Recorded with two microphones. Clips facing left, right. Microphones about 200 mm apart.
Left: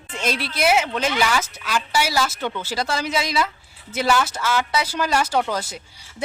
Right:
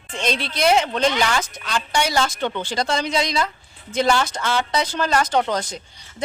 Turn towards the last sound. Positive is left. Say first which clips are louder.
# right 2 dB
turn(degrees=5)  # may be behind; listen again after turning